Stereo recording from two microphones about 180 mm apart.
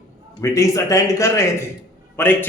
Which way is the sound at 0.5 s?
20° left (ahead or behind).